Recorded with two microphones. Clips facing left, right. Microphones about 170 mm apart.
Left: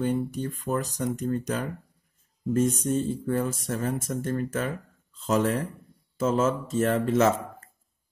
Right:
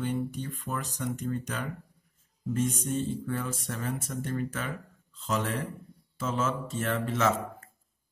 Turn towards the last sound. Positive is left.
turn(degrees=35)  # may be behind; listen again after turning